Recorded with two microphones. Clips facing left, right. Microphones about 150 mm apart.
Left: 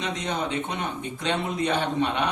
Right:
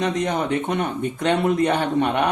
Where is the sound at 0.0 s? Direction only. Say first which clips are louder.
Right 6 dB; 55° right (ahead or behind).